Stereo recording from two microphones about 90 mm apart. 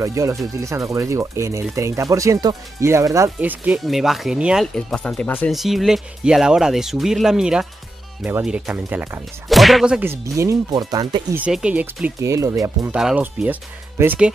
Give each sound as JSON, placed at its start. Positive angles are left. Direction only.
{"t": 0.0, "sound": "speech", "side_deg": -35}
{"t": 3.3, "sound": "speech", "side_deg": -15}
{"t": 3.8, "sound": "speech", "side_deg": 0}
{"t": 4.7, "sound": "speech", "side_deg": 10}
{"t": 5.5, "sound": "speech", "side_deg": 0}
{"t": 9.5, "sound": "whip", "side_deg": 0}
{"t": 10.2, "sound": "speech", "side_deg": -35}
{"t": 11.5, "sound": "speech", "side_deg": -10}
{"t": 12.2, "sound": "speech", "side_deg": -35}
{"t": 12.9, "sound": "speech", "side_deg": -15}